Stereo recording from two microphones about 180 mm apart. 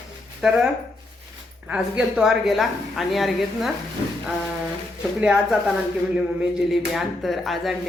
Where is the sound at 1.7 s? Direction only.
5° right (ahead or behind).